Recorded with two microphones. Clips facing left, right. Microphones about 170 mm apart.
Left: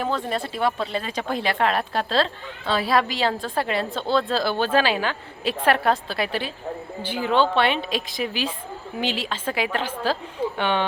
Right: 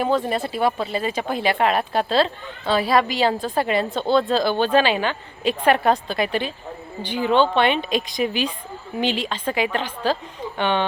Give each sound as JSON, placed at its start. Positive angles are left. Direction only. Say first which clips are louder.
{"t": 0.0, "sound": "speech", "louder": "right 4 dB", "side_deg": -5}